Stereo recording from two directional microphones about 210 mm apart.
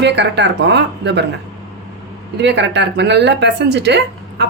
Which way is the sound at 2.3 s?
55° right (ahead or behind).